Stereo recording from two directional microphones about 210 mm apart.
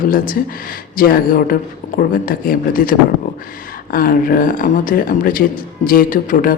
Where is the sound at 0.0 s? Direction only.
40° left (ahead or behind).